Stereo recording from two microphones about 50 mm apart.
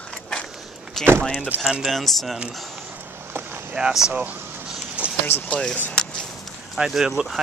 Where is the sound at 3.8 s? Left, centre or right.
Centre.